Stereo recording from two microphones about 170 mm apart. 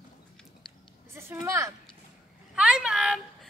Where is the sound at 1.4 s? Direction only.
15° right (ahead or behind).